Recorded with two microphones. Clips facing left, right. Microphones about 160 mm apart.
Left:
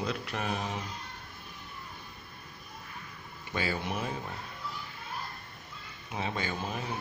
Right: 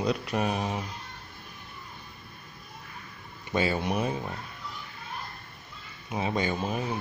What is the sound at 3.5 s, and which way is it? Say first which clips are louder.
Speech: right 6 dB; 20° right (ahead or behind).